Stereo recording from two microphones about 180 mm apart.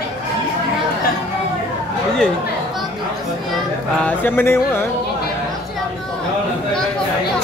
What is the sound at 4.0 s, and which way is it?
Music, 10° left (ahead or behind).